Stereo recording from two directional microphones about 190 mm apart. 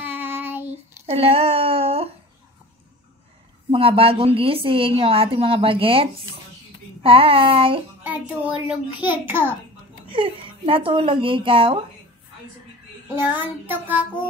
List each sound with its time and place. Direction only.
0.0 s child singing: 10° right (ahead or behind)
1.0 s a sound: 30° right (ahead or behind)
3.7 s a woman's voice: 30° right (ahead or behind)
8.0 s a child's voice: 10° right (ahead or behind)
10.0 s a woman's voice: 30° right (ahead or behind)
13.1 s a child's voice: 10° right (ahead or behind)